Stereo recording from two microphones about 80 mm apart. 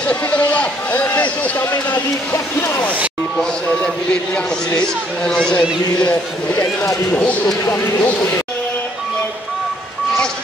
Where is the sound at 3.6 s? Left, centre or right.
Centre.